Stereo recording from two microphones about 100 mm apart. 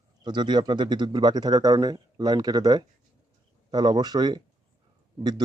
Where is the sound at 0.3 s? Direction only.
50° right (ahead or behind).